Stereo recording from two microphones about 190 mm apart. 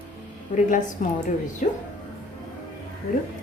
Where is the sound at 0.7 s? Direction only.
40° left (ahead or behind).